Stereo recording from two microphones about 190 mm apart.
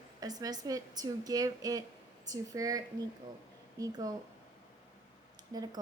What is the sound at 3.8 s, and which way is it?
Speech, 20° right (ahead or behind).